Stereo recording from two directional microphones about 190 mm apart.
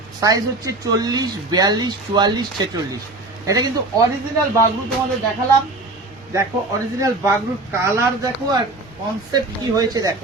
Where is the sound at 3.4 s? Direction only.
20° right (ahead or behind).